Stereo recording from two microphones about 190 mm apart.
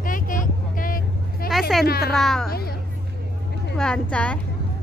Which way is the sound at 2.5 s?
55° left (ahead or behind).